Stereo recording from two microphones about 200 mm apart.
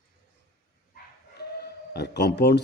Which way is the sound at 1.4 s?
55° left (ahead or behind).